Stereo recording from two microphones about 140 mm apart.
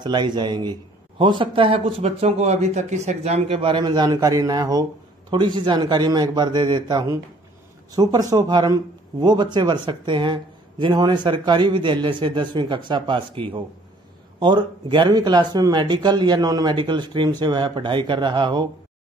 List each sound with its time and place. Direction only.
0.0 s a man's voice: 30° right (ahead or behind)